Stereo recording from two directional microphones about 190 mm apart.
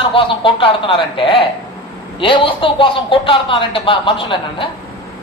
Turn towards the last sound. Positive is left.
turn(degrees=25)  # may be behind; listen again after turning